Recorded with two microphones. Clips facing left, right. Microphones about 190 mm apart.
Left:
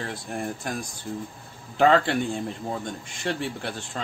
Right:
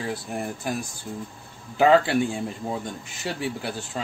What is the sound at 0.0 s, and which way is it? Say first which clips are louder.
A man's voice: right 2 dB; 5° right (ahead or behind).